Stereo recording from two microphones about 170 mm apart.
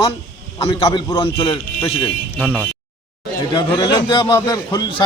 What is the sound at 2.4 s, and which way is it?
Speech, 5° right (ahead or behind).